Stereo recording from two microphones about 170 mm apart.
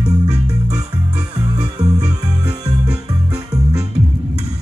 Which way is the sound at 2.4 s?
20° right (ahead or behind).